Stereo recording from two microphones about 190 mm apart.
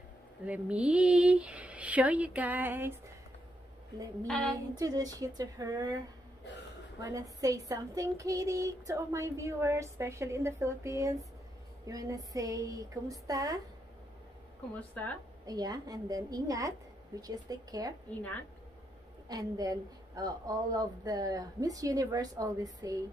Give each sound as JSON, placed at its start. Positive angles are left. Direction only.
{"t": 0.5, "sound": "speech", "side_deg": -5}
{"t": 4.3, "sound": "a sound", "side_deg": 0}
{"t": 4.7, "sound": "a woman's voice", "side_deg": -20}
{"t": 7.0, "sound": "speech", "side_deg": -20}
{"t": 14.8, "sound": "speech", "side_deg": 5}
{"t": 15.4, "sound": "a woman's voice", "side_deg": -20}
{"t": 18.1, "sound": "speech", "side_deg": 10}
{"t": 19.2, "sound": "a woman's voice", "side_deg": -20}